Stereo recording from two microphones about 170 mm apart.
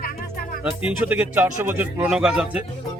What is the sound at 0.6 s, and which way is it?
Speech, 10° right (ahead or behind).